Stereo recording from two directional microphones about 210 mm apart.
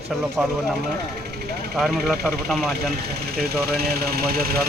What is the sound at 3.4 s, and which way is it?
Speech, 50° right (ahead or behind).